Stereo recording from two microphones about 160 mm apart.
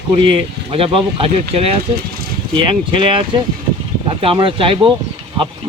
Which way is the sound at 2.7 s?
30° right (ahead or behind).